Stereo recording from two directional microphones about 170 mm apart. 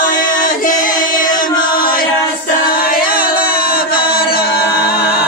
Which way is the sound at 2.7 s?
55° left (ahead or behind).